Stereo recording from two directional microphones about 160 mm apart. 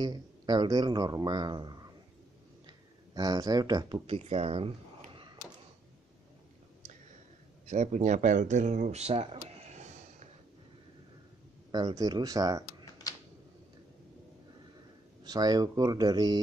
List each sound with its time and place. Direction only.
0.0 s speech: 25° right (ahead or behind)
3.2 s speech: 25° right (ahead or behind)
4.1 s a sound: 40° right (ahead or behind)
7.6 s speech: 50° right (ahead or behind)
11.7 s speech: 25° right (ahead or behind)
15.2 s speech: 25° right (ahead or behind)